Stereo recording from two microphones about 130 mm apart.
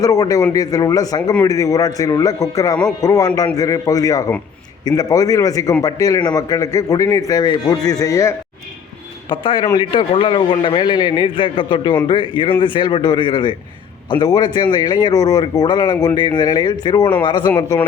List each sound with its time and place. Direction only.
0.0 s a man's voice: 25° left (ahead or behind)
9.3 s a man's voice: 40° left (ahead or behind)